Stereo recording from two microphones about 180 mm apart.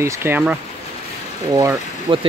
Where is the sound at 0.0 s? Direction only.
15° right (ahead or behind).